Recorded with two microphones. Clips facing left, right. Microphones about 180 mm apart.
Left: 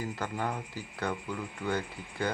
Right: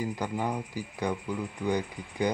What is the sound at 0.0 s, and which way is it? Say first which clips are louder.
Speech: right 3 dB; 15° right (ahead or behind).